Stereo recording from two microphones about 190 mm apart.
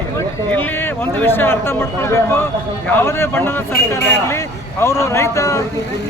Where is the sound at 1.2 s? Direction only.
10° left (ahead or behind).